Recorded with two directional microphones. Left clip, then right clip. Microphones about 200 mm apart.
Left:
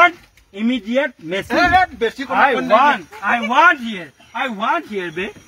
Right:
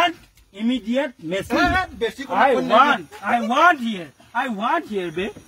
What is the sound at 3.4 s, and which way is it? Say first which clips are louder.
Speech: left 3 dB; 15° right (ahead or behind).